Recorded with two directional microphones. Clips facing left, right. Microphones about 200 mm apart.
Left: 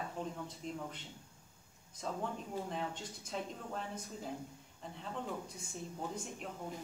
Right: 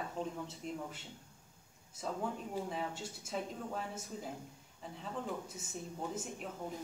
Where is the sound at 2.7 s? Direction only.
5° right (ahead or behind).